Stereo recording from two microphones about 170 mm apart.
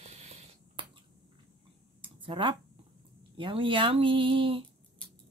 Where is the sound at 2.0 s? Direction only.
30° right (ahead or behind).